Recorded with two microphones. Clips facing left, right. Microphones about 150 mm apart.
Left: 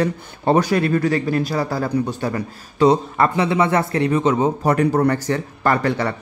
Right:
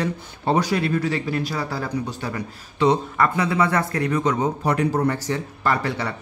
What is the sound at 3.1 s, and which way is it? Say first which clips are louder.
A man's voice: left 3 dB; 25° left (ahead or behind).